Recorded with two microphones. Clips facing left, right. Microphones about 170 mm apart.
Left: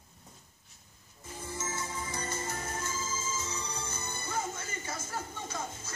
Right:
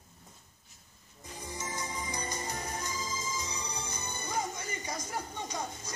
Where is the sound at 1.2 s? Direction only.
15° right (ahead or behind).